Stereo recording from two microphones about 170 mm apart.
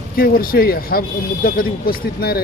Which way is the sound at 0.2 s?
60° left (ahead or behind).